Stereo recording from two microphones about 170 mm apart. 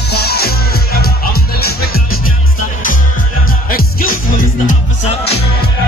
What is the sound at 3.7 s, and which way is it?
Music, 60° left (ahead or behind).